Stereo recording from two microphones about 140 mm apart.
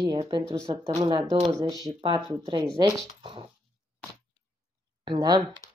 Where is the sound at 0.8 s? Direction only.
40° right (ahead or behind).